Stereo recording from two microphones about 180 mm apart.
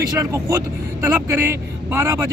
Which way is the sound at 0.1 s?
15° right (ahead or behind).